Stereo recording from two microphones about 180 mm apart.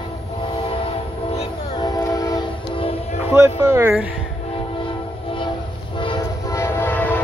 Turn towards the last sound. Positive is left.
turn(degrees=10)  # may be behind; listen again after turning